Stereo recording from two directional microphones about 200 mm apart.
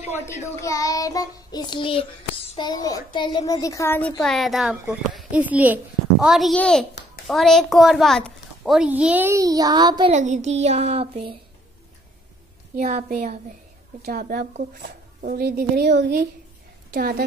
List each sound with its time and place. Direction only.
0.6 s child singing: 15° left (ahead or behind); by 4.9 s centre (ahead or behind)
5.1 s a child's voice: 5° right (ahead or behind); by 10.1 s 20° right (ahead or behind)
10.1 s child singing: 35° right (ahead or behind)
12.7 s a woman's voice: 45° right (ahead or behind)
14.0 s a woman's voice: 50° right (ahead or behind)